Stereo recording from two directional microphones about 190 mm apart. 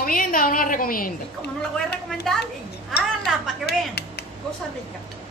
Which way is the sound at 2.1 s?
Centre (ahead or behind).